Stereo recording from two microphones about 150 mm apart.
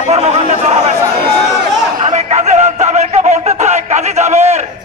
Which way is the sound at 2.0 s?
50° right (ahead or behind).